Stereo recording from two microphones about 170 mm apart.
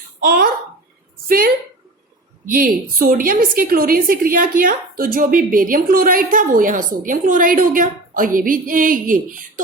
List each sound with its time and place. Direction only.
0.3 s a woman's voice: 60° right (ahead or behind)